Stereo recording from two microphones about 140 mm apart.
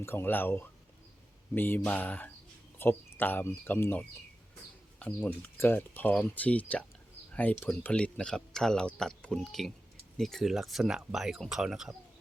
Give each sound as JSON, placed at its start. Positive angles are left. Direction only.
{"t": 0.0, "sound": "speech", "side_deg": 15}